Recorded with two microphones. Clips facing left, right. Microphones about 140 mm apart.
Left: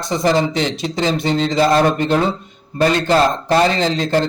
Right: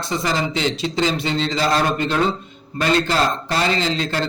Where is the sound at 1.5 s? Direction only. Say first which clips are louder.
Left 6 dB; 50° left (ahead or behind).